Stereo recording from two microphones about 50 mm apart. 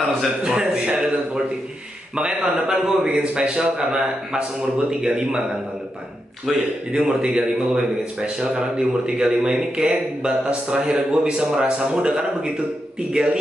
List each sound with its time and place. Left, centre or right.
0.4 s speech: centre
6.5 s a man's voice: centre
6.9 s speech: centre